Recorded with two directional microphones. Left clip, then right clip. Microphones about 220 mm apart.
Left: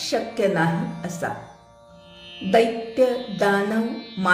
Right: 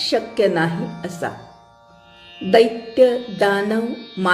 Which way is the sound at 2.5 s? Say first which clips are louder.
Right 4 dB; 30° right (ahead or behind).